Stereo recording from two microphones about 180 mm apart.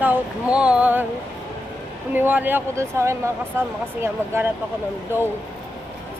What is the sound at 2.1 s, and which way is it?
Speech, 10° right (ahead or behind).